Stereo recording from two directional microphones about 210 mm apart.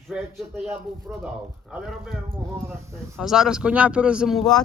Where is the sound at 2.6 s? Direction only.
10° right (ahead or behind).